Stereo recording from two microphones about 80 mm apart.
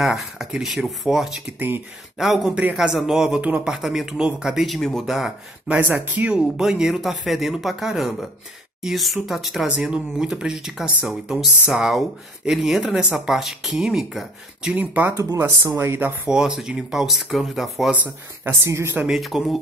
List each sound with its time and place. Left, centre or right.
0.0 s speech: centre
3.3 s speech: centre
5.7 s speech: centre
6.4 s speech: centre
14.8 s speech: centre
16.3 s speech: centre
18.4 s a woman's voice: right
19.0 s speech: centre